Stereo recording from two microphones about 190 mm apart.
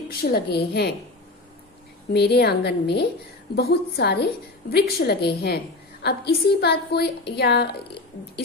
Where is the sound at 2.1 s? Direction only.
60° left (ahead or behind).